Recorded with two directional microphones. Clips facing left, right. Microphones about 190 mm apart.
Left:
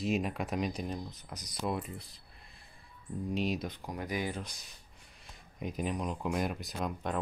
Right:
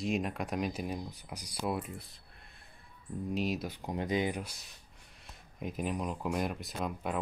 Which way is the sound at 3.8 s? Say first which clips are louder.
Right 4 dB; 25° right (ahead or behind).